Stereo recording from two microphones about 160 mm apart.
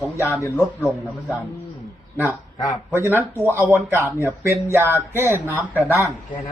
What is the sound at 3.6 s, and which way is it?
Speech, 10° right (ahead or behind).